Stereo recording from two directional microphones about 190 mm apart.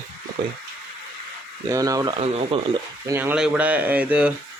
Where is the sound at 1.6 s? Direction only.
20° right (ahead or behind).